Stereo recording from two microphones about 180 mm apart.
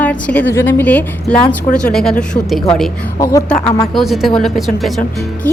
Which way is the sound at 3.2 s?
20° left (ahead or behind).